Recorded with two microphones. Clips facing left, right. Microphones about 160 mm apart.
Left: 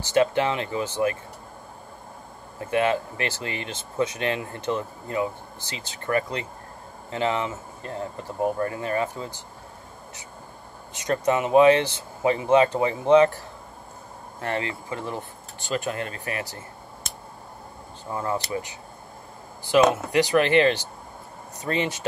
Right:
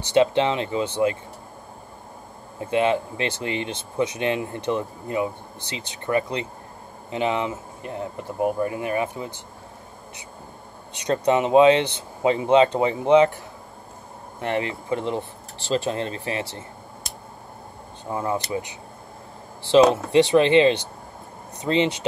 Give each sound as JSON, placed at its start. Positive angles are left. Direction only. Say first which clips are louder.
{"t": 0.1, "sound": "speech", "louder": "right 2 dB", "side_deg": -20}
{"t": 2.6, "sound": "speech", "louder": "right 2 dB", "side_deg": -20}
{"t": 11.0, "sound": "speech", "louder": "right 3 dB", "side_deg": -20}
{"t": 14.4, "sound": "speech", "louder": "right 3 dB", "side_deg": -20}
{"t": 18.1, "sound": "speech", "louder": "right 2 dB", "side_deg": -15}